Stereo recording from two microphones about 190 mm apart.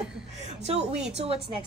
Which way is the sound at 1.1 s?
35° right (ahead or behind).